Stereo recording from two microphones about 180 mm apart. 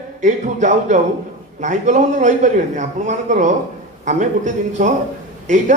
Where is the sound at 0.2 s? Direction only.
40° right (ahead or behind).